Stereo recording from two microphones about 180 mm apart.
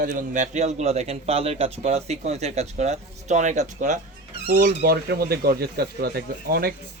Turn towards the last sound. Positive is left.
turn(degrees=-60)  # may be behind; listen again after turning